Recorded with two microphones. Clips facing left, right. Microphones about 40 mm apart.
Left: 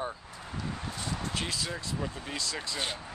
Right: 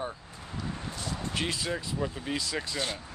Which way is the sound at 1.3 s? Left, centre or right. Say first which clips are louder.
Right 3 dB; centre.